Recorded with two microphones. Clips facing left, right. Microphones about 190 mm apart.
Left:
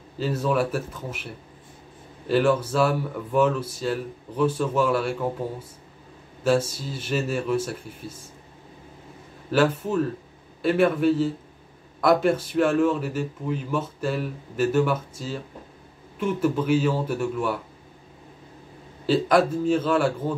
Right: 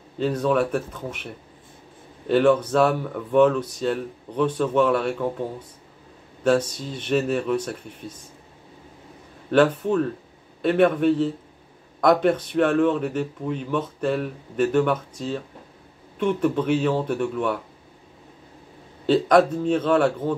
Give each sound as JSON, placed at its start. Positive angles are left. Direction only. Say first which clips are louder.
{"t": 0.2, "sound": "a man's voice", "louder": "right 2 dB", "side_deg": 5}
{"t": 6.4, "sound": "a man's voice", "louder": "right 2 dB", "side_deg": 5}
{"t": 9.5, "sound": "a man's voice", "louder": "right 3 dB", "side_deg": 5}
{"t": 19.0, "sound": "a man's voice", "louder": "right 3 dB", "side_deg": 5}